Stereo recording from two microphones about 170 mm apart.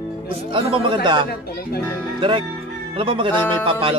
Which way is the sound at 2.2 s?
30° right (ahead or behind).